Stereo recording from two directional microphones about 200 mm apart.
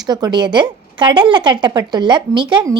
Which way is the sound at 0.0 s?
20° right (ahead or behind).